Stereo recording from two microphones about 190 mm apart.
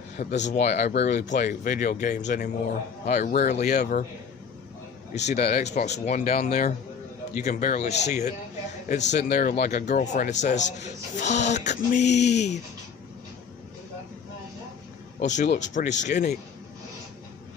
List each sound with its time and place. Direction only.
0.2 s speech: 40° left (ahead or behind)
3.2 s speech: 55° left (ahead or behind)
3.4 s speech: 40° left (ahead or behind)
5.1 s speech: 35° left (ahead or behind)
15.1 s speech: 40° left (ahead or behind)